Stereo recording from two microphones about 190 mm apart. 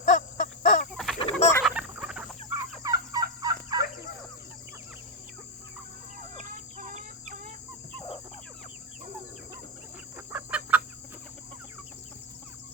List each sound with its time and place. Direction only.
0.0 s a sound: 45° left (ahead or behind)
0.9 s chicken: centre (ahead or behind)
1.2 s chicken: 35° left (ahead or behind)
1.6 s chicken: 5° right (ahead or behind)
2.8 s cricket: 20° right (ahead or behind)
3.4 s fowl: 20° right (ahead or behind)
6.3 s chicken: 40° right (ahead or behind)
10.2 s chicken: 10° right (ahead or behind)